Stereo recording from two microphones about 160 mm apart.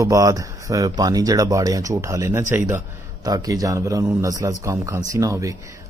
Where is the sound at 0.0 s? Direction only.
20° right (ahead or behind).